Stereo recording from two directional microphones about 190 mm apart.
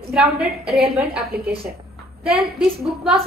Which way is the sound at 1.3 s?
55° right (ahead or behind).